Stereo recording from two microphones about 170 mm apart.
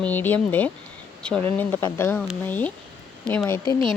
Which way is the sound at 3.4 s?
20° left (ahead or behind).